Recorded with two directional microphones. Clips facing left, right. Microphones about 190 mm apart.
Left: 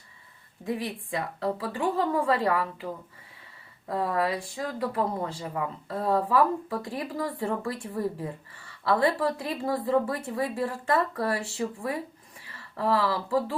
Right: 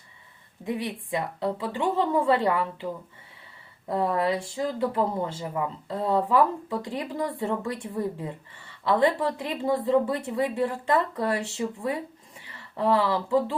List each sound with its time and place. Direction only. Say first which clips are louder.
0.6 s speech: right 1 dB; 20° right (ahead or behind)
3.8 s speech: right 2 dB; 25° right (ahead or behind)